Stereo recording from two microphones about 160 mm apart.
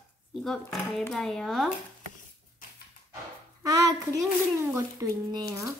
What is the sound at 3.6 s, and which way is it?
Speech, 20° right (ahead or behind).